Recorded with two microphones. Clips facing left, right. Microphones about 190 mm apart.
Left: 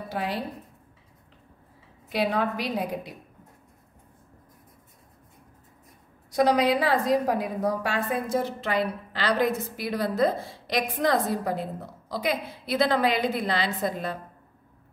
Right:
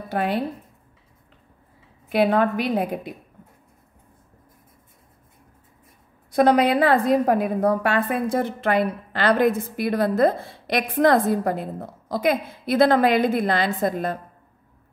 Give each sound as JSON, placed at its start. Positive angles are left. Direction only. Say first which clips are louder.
{"t": 0.1, "sound": "a woman's voice", "louder": "right 7 dB", "side_deg": -60}
{"t": 2.1, "sound": "a woman's voice", "louder": "right 7 dB", "side_deg": -60}
{"t": 6.3, "sound": "a woman's voice", "louder": "right 4 dB", "side_deg": -55}